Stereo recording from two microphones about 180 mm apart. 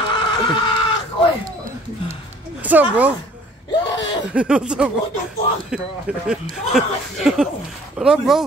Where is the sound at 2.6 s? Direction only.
10° right (ahead or behind).